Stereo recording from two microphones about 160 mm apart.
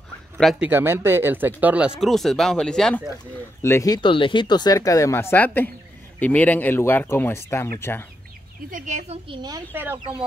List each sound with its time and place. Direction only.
0.4 s speech: centre (ahead or behind)
0.7 s speech: 15° right (ahead or behind); by 3.0 s 5° left (ahead or behind)
3.6 s speech: 20° left (ahead or behind)
8.6 s a woman's voice: 55° right (ahead or behind)
9.7 s speech: 10° right (ahead or behind)